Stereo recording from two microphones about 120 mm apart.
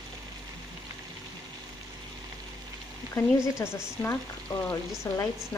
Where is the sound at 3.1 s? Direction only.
20° left (ahead or behind).